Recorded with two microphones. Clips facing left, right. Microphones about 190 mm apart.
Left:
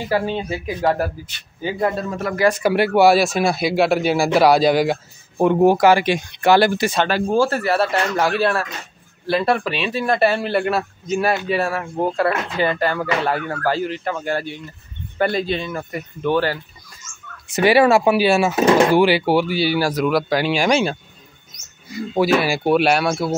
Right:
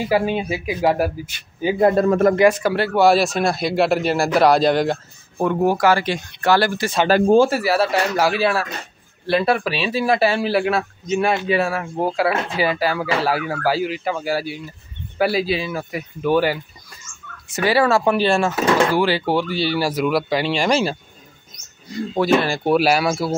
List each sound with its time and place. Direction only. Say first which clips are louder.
0.0 s a man's voice: right 2 dB; 10° right (ahead or behind)
2.0 s a man's voice: right 10 dB; 50° right (ahead or behind)
2.6 s speech: left 2 dB; 15° left (ahead or behind)
3.1 s speech: left 1 dB; centre (ahead or behind)
5.4 s speech: left 4 dB; 20° left (ahead or behind)
7.3 s speech: right 2 dB; 10° right (ahead or behind)
17.6 s speech: left 3 dB; 20° left (ahead or behind)
18.6 s speech: left 6 dB; 20° left (ahead or behind); by 23.3 s 5° right (ahead or behind)